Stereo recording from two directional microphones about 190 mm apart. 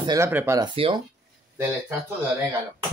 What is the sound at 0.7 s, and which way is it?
Speech, 30° right (ahead or behind).